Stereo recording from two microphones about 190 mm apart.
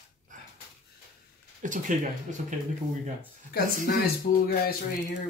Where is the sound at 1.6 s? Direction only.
40° right (ahead or behind).